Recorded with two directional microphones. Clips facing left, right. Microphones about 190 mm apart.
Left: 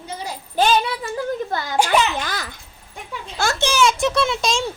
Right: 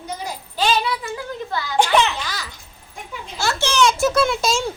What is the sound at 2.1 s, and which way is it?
Babbling, 50° left (ahead or behind).